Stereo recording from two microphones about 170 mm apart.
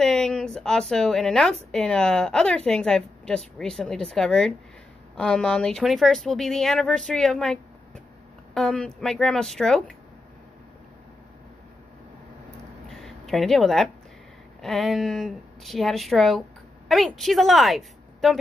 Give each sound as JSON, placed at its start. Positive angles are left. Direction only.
{"t": 0.0, "sound": "a woman's voice", "side_deg": 0}
{"t": 8.5, "sound": "a woman's voice", "side_deg": 5}
{"t": 12.9, "sound": "a sound", "side_deg": 0}
{"t": 14.6, "sound": "speech", "side_deg": 0}